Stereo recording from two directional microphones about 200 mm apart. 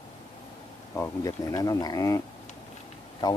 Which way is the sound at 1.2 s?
15° left (ahead or behind).